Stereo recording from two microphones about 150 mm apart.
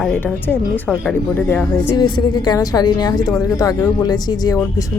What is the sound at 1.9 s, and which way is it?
A woman's voice, 30° left (ahead or behind).